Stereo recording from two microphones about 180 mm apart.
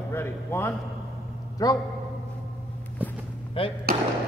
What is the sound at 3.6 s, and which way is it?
Speech, 30° left (ahead or behind).